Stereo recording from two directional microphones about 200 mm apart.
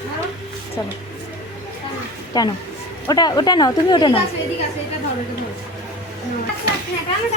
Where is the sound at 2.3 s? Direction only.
20° left (ahead or behind).